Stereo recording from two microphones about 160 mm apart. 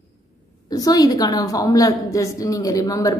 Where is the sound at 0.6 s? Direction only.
25° left (ahead or behind).